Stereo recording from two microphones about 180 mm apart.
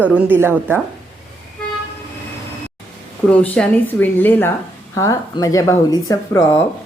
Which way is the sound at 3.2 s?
5° left (ahead or behind).